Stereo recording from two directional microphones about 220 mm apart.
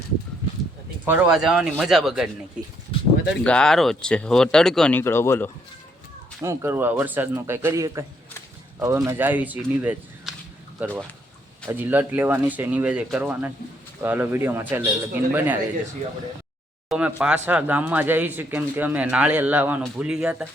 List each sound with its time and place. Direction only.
1.0 s speech: 5° right (ahead or behind)
2.9 s a sound: 25° left (ahead or behind)
3.4 s speech: 5° left (ahead or behind)
6.4 s speech: 10° right (ahead or behind)
9.0 s speech: 10° right (ahead or behind)
16.9 s speech: 5° right (ahead or behind)